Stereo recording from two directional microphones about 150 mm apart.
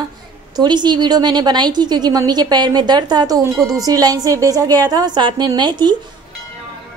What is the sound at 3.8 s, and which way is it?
A woman's voice, 25° right (ahead or behind).